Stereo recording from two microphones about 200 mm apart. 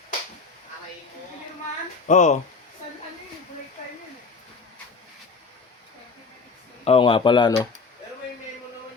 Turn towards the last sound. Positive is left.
turn(degrees=20)  # may be behind; listen again after turning